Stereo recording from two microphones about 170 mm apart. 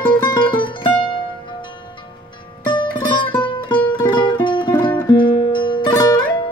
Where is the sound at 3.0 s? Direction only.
25° left (ahead or behind).